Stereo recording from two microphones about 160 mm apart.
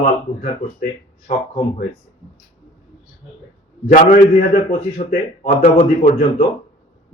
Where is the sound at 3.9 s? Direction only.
55° left (ahead or behind).